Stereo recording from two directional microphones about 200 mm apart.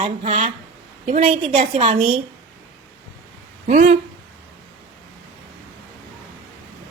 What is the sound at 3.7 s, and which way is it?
Speech, 35° right (ahead or behind).